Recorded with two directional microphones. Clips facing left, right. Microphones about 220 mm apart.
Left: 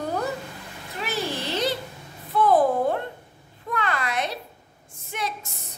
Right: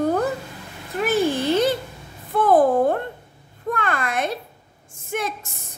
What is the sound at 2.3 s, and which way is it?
Music, 50° right (ahead or behind).